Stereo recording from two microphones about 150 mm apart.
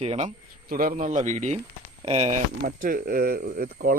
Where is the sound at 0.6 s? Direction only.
70° right (ahead or behind); by 2.3 s 45° right (ahead or behind).